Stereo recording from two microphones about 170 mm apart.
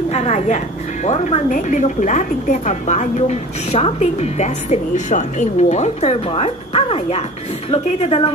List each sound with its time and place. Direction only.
0.1 s a woman's voice: 40° left (ahead or behind)